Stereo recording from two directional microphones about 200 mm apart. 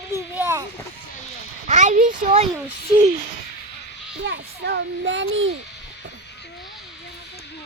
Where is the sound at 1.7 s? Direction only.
35° right (ahead or behind).